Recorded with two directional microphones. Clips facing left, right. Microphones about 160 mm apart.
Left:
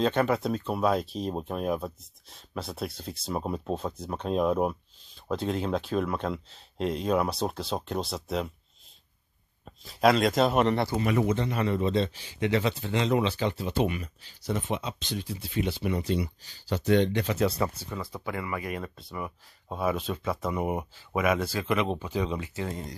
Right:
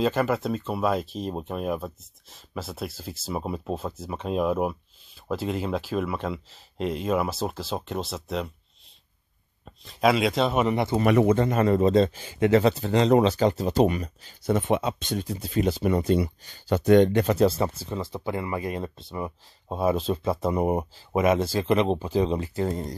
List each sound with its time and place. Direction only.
0.0 s speech: 5° right (ahead or behind)
9.7 s speech: centre (ahead or behind)
11.0 s speech: 60° right (ahead or behind)
17.4 s speech: 25° right (ahead or behind)